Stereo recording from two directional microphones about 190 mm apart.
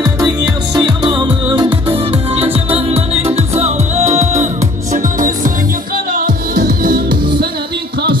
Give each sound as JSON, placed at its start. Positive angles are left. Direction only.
{"t": 0.7, "sound": "music", "side_deg": -25}